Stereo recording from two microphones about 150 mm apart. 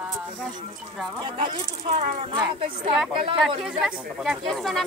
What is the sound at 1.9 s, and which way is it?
Speech, 45° right (ahead or behind).